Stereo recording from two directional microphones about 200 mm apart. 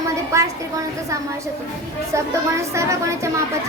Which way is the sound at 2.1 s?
15° right (ahead or behind).